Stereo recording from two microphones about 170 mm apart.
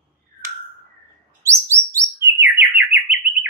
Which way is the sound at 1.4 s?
15° right (ahead or behind).